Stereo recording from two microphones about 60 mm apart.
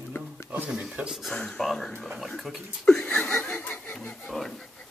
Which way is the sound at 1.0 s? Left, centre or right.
Right.